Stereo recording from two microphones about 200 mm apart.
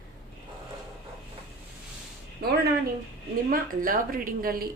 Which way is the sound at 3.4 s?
45° right (ahead or behind).